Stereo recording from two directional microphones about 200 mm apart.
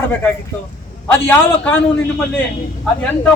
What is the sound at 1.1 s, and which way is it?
Speech, 5° left (ahead or behind).